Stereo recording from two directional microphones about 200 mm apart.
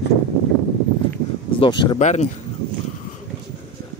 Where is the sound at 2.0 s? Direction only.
35° left (ahead or behind).